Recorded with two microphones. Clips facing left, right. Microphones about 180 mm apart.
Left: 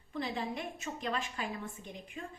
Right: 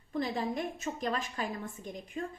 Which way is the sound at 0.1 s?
40° right (ahead or behind).